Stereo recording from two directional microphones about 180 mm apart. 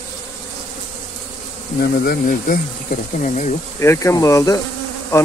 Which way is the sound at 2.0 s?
50° left (ahead or behind).